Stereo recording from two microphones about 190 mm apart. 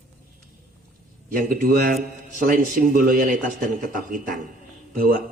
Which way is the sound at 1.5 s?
50° right (ahead or behind).